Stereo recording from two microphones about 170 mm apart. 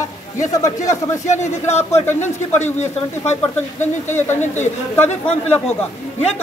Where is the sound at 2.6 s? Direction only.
40° left (ahead or behind).